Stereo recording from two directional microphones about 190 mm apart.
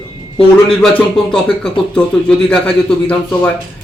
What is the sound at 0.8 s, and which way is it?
Speech, 5° left (ahead or behind).